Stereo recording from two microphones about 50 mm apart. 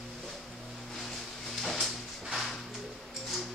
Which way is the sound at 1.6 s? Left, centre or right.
Centre.